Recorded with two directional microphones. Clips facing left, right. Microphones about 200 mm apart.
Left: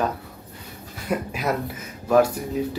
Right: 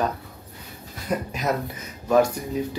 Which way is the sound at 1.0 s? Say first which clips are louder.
Even; 5° left (ahead or behind).